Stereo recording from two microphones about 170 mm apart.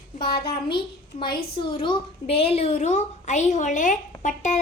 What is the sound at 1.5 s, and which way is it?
A woman's voice, 30° left (ahead or behind).